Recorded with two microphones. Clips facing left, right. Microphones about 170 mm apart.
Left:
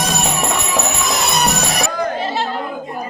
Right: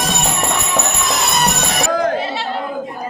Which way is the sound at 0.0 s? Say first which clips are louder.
Even; centre (ahead or behind).